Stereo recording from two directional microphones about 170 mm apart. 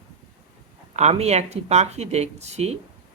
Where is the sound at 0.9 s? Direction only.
40° right (ahead or behind).